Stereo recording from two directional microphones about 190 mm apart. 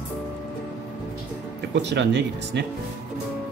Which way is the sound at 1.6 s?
65° right (ahead or behind).